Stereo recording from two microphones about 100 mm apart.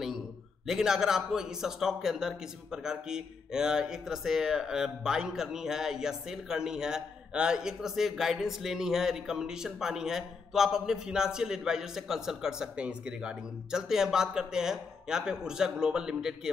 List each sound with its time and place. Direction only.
0.7 s a man's voice: 5° right (ahead or behind)